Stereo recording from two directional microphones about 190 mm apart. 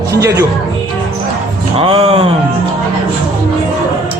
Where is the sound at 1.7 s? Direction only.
30° right (ahead or behind).